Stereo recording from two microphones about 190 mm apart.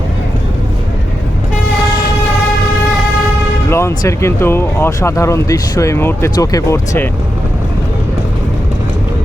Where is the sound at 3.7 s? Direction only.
15° left (ahead or behind).